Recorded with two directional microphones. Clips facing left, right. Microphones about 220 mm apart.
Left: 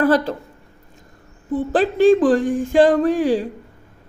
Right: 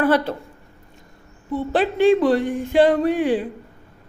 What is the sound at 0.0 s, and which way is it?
Speech, 40° left (ahead or behind).